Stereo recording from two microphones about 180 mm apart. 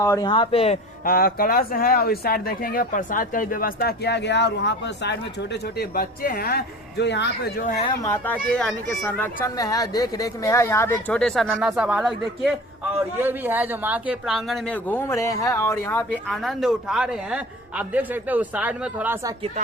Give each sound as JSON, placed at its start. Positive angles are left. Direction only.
{"t": 0.0, "sound": "a man's voice", "side_deg": 20}
{"t": 1.0, "sound": "speech", "side_deg": 55}
{"t": 8.0, "sound": "speech", "side_deg": 10}